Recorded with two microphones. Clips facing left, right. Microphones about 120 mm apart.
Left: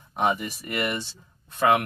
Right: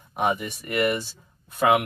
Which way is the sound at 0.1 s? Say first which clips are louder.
Even; 5° right (ahead or behind).